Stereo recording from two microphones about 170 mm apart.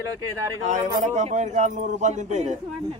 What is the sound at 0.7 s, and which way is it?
Speech, 45° right (ahead or behind).